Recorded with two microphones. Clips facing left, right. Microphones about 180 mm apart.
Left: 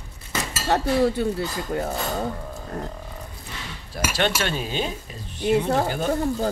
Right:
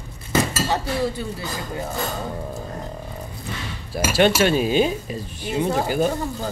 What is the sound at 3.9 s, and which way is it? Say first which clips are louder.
Speech: right 6 dB; 5° right (ahead or behind).